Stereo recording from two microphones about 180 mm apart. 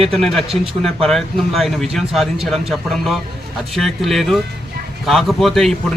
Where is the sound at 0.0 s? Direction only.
Centre (ahead or behind).